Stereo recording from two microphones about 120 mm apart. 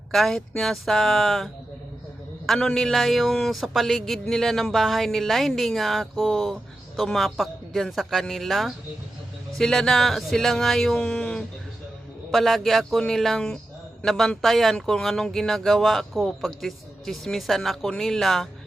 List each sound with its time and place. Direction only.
0.1 s a man's voice: centre (ahead or behind)
2.5 s a man's voice: 5° left (ahead or behind)